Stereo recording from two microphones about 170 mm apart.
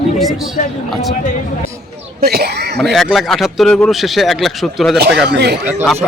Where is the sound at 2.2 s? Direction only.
70° right (ahead or behind).